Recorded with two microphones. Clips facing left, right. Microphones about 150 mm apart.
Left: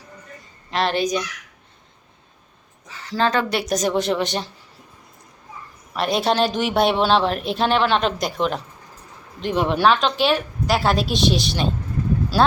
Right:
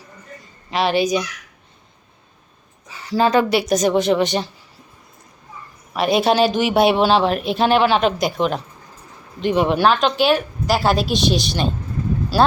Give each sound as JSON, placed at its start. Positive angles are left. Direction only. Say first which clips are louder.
{"t": 0.7, "sound": "speech", "louder": "right 3 dB", "side_deg": -5}
{"t": 2.9, "sound": "speech", "louder": "right 4 dB", "side_deg": -10}
{"t": 5.9, "sound": "speech", "louder": "right 4 dB", "side_deg": -5}